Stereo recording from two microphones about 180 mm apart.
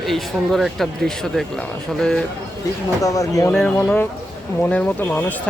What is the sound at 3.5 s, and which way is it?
Speech, 5° left (ahead or behind).